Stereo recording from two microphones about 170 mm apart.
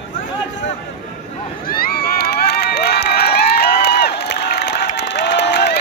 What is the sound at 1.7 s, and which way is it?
Crowd, 60° left (ahead or behind).